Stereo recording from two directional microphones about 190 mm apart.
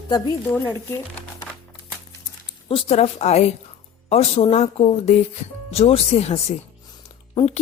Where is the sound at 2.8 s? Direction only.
35° left (ahead or behind).